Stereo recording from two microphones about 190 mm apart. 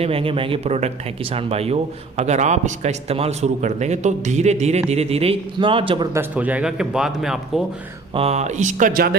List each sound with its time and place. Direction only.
0.0 s speech: 30° right (ahead or behind)
6.1 s a man's voice: 10° right (ahead or behind)
8.1 s speech: 30° right (ahead or behind); by 9.1 s 50° right (ahead or behind)